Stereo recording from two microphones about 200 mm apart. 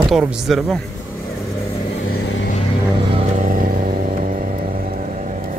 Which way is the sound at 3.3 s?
45° right (ahead or behind).